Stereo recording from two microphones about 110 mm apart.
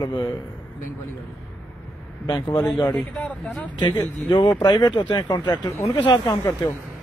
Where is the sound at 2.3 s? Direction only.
35° left (ahead or behind).